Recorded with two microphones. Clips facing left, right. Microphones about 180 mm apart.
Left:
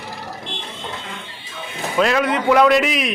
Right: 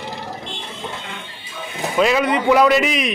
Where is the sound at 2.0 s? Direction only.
5° right (ahead or behind).